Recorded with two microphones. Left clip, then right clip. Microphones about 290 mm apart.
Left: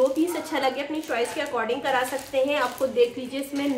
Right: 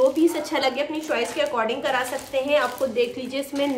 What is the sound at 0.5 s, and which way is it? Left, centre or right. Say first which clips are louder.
A woman's voice: right 2 dB; centre.